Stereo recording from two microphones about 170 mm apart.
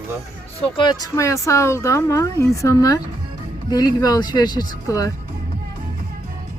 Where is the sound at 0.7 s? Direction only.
25° left (ahead or behind).